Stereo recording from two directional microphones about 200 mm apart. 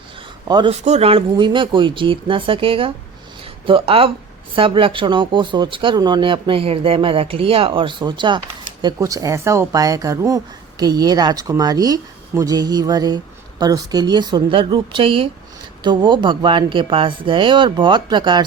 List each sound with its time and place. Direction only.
0.4 s speech: 25° right (ahead or behind)